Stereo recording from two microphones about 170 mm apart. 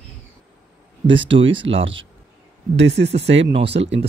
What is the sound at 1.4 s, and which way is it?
Speech, 90° right.